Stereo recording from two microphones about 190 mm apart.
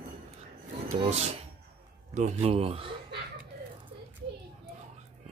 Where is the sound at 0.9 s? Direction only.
35° right (ahead or behind).